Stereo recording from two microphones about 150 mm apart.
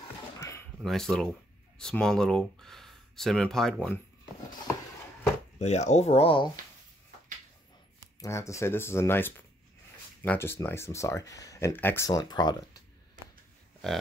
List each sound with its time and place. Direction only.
0.4 s a sound: 20° left (ahead or behind)
0.8 s speech: centre (ahead or behind)
5.6 s speech: 50° left (ahead or behind)
8.2 s speech: 20° left (ahead or behind)
12.1 s speech: 30° left (ahead or behind)